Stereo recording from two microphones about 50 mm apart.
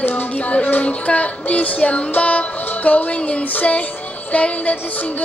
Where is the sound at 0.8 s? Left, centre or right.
Left.